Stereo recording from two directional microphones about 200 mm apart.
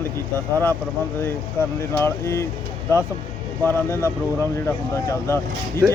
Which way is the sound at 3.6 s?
10° left (ahead or behind).